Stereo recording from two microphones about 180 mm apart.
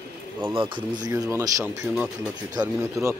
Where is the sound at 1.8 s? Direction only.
5° right (ahead or behind).